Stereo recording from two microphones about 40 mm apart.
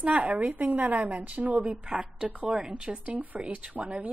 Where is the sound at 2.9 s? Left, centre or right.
Right.